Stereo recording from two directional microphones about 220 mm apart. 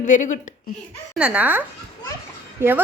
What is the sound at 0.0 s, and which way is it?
Speech, 35° left (ahead or behind).